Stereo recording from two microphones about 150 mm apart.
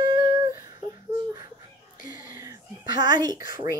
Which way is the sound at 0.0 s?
25° right (ahead or behind).